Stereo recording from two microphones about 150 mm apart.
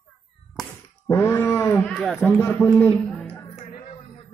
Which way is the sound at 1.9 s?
Centre (ahead or behind).